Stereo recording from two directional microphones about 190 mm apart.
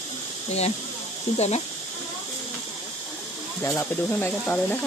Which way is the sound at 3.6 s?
10° left (ahead or behind).